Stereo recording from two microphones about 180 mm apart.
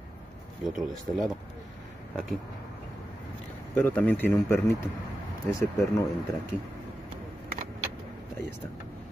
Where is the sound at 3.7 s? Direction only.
10° left (ahead or behind).